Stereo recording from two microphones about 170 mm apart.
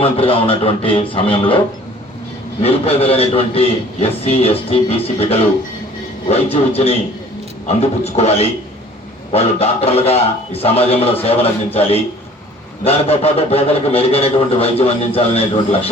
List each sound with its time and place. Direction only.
0.0 s a man's voice: 35° left (ahead or behind)
2.6 s a man's voice: 35° left (ahead or behind)